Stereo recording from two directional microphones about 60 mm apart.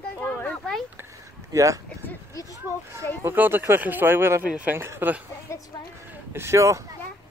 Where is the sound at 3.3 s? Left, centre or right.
Right.